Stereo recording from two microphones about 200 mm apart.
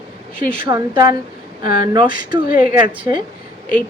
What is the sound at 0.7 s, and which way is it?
A woman's voice, 20° right (ahead or behind).